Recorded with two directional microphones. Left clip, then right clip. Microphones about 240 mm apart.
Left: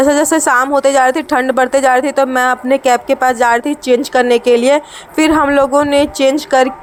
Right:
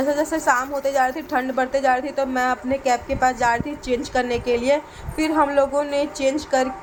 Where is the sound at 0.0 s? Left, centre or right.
Left.